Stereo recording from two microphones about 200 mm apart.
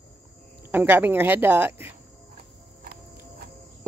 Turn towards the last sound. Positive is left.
turn(degrees=-50)  # may be behind; listen again after turning